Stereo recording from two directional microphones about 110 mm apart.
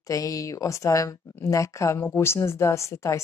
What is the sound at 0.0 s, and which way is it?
A woman's voice, 30° left (ahead or behind).